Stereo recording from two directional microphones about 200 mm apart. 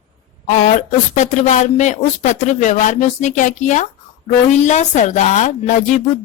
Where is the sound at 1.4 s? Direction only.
40° left (ahead or behind).